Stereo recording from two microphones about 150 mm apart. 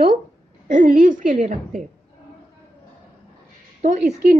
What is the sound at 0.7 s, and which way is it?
A woman's voice, 60° right (ahead or behind).